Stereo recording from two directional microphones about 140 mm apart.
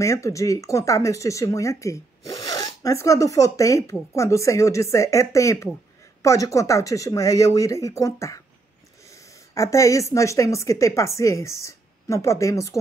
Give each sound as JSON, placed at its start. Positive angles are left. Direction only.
{"t": 0.0, "sound": "speech", "side_deg": 20}
{"t": 9.5, "sound": "speech", "side_deg": 20}